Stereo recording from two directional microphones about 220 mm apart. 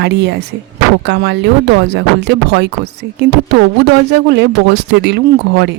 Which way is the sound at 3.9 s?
50° right (ahead or behind).